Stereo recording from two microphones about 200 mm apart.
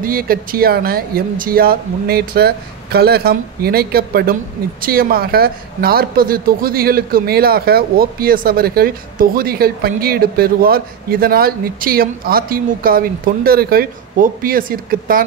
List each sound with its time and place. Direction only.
0.0 s speech: 45° right (ahead or behind)